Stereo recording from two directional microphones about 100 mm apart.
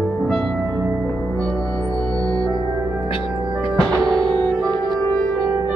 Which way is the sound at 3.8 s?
5° left (ahead or behind).